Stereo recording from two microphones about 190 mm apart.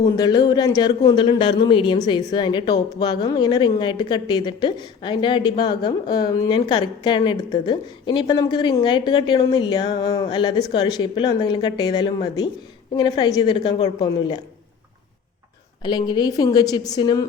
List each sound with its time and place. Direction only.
0.2 s a woman's voice: 20° left (ahead or behind)
15.8 s a woman's voice: 25° left (ahead or behind)